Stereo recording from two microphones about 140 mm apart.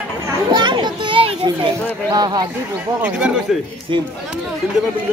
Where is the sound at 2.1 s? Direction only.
30° right (ahead or behind).